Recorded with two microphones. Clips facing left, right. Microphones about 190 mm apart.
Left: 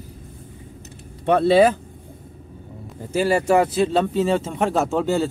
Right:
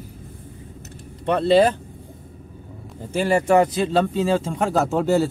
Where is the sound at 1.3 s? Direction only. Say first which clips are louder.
Left 1 dB; 5° left (ahead or behind).